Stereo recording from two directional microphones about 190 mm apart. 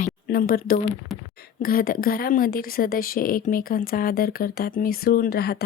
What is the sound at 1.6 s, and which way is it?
A woman's voice, 50° left (ahead or behind).